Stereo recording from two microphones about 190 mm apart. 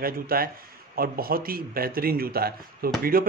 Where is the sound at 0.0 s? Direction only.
50° right (ahead or behind).